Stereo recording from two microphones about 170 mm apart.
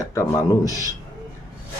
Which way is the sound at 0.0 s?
20° left (ahead or behind).